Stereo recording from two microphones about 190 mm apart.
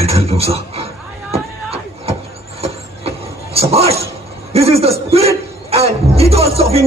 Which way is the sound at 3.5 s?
30° right (ahead or behind).